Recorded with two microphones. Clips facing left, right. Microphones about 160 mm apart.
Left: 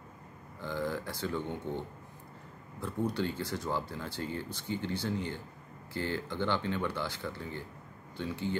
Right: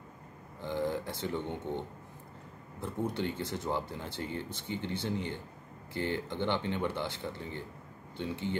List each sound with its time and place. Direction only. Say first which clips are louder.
0.6 s speech: right 2 dB; 20° right (ahead or behind)